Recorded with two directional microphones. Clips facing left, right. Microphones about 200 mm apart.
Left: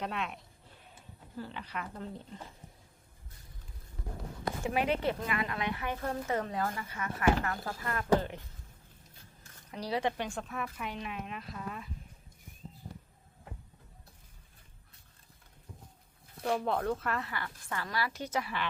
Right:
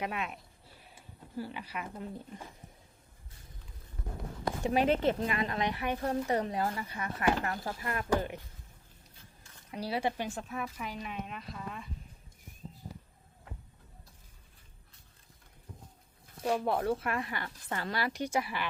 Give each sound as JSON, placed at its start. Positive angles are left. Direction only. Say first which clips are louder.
{"t": 0.0, "sound": "a sound", "louder": "right 1 dB", "side_deg": -5}
{"t": 4.6, "sound": "a woman's voice", "louder": "right 4 dB", "side_deg": -30}
{"t": 9.7, "sound": "a woman's voice", "louder": "even", "side_deg": -10}
{"t": 16.4, "sound": "a woman's voice", "louder": "right 1 dB", "side_deg": -10}